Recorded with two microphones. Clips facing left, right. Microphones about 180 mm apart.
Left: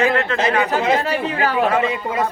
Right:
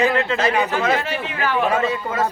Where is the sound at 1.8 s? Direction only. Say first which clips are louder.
Left 1 dB; 15° left (ahead or behind).